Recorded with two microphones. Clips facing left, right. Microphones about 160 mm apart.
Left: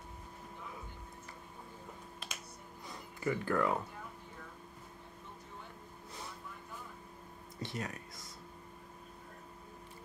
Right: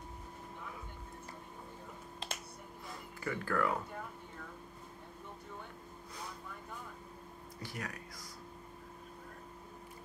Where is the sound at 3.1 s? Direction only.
20° left (ahead or behind).